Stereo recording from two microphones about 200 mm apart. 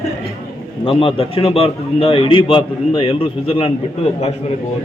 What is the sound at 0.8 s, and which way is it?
A man's voice, 25° left (ahead or behind).